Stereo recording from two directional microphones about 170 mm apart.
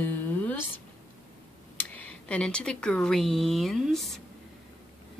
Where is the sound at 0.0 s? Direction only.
10° left (ahead or behind).